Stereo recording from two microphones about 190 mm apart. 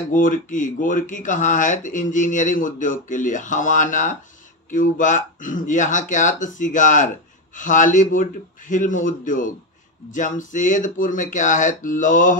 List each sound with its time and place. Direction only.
0.1 s speech: 45° left (ahead or behind)